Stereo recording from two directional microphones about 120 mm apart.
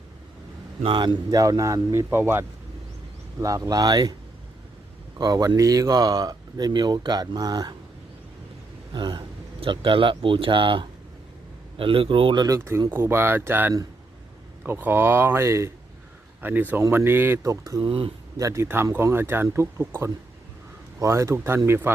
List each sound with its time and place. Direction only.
0.9 s speech: 40° right (ahead or behind)
5.1 s speech: 35° right (ahead or behind)
8.9 s speech: 40° right (ahead or behind)
12.5 s speech: 20° right (ahead or behind)
17.8 s speech: 50° right (ahead or behind)
18.3 s speech: 25° right (ahead or behind)